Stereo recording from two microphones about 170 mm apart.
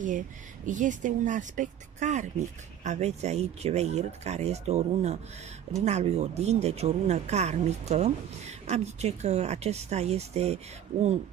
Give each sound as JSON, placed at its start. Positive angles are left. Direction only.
{"t": 0.7, "sound": "speech", "side_deg": -50}